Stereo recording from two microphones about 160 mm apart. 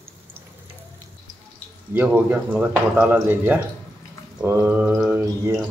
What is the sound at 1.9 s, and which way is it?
Speech, 10° right (ahead or behind).